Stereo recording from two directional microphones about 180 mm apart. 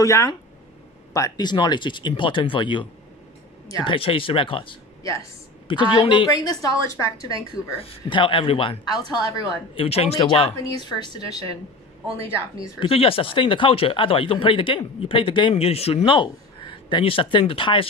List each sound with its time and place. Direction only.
0.0 s a woman's voice: 15° left (ahead or behind)
7.8 s speech: 30° left (ahead or behind)
9.8 s speech: 35° left (ahead or behind)
12.6 s speech: 30° left (ahead or behind)